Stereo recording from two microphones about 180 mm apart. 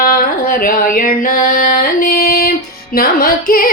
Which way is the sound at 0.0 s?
55° left (ahead or behind).